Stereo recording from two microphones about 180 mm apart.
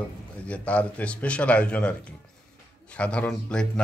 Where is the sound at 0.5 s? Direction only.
5° left (ahead or behind).